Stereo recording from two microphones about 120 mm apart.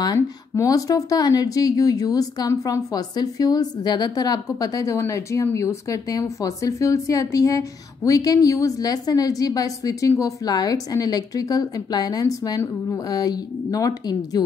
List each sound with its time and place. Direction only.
0.0 s speech: 30° left (ahead or behind)